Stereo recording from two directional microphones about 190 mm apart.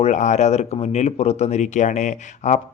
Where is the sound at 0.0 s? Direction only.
40° left (ahead or behind).